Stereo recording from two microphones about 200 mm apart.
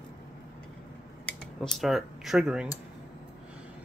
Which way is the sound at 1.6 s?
Centre (ahead or behind).